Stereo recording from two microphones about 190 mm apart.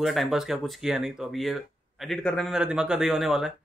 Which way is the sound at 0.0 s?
Centre (ahead or behind).